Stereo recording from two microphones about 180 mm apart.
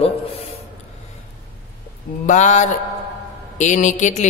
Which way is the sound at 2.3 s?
40° left (ahead or behind).